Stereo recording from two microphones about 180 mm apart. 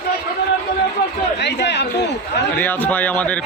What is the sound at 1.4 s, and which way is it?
Speech, 70° left (ahead or behind).